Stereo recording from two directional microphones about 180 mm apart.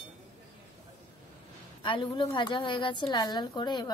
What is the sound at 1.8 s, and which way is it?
A woman's voice, 25° left (ahead or behind).